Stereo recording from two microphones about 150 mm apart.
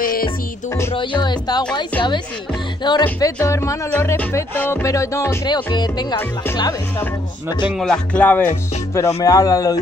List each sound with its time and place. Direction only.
0.0 s music: 70° left (ahead or behind)
1.2 s speech: 30° left (ahead or behind)
7.8 s music: 5° left (ahead or behind)
8.9 s speech: 20° left (ahead or behind)